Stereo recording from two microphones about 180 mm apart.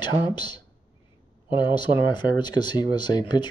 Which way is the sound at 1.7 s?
25° left (ahead or behind).